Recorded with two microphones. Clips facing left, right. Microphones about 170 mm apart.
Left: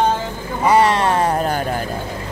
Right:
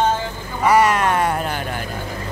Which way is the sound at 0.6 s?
30° left (ahead or behind).